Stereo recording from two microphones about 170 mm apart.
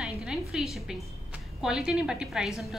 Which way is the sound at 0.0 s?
5° right (ahead or behind).